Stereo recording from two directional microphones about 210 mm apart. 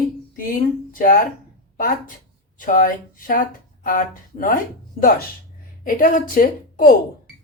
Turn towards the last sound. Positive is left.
turn(degrees=40)  # may be behind; listen again after turning